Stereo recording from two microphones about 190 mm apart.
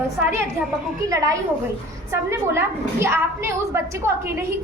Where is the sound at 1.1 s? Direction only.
20° right (ahead or behind).